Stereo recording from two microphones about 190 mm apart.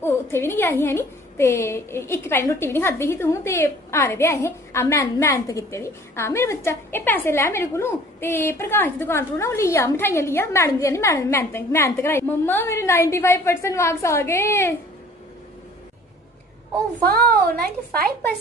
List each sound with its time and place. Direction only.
0.0 s a woman's voice: 10° left (ahead or behind)
17.5 s a woman's voice: 55° right (ahead or behind)